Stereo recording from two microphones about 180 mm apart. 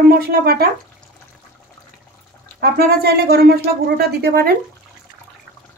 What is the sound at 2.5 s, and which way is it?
Speech, 60° right (ahead or behind).